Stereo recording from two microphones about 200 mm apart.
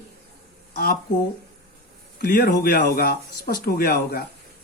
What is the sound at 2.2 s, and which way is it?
Speech, 55° left (ahead or behind).